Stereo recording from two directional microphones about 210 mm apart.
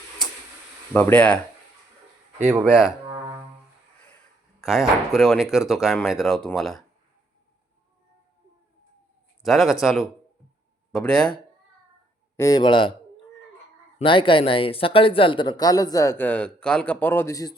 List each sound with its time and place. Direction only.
0.9 s speech: 5° left (ahead or behind)
2.5 s speech: 5° right (ahead or behind)
4.6 s speech: centre (ahead or behind)
9.4 s speech: centre (ahead or behind)
12.4 s a man's voice: 20° left (ahead or behind)
14.0 s speech: 25° left (ahead or behind)